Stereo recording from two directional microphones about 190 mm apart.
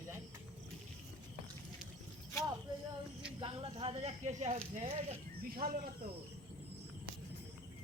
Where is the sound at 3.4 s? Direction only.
30° right (ahead or behind).